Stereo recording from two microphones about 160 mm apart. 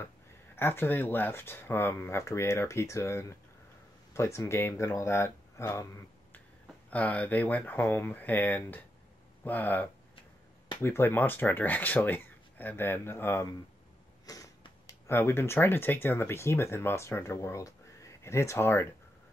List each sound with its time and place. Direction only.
0.6 s speech: 15° left (ahead or behind)
6.9 s speech: 10° left (ahead or behind)